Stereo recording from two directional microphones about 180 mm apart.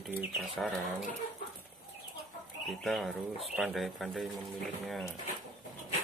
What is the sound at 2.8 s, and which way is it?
Speech, centre (ahead or behind).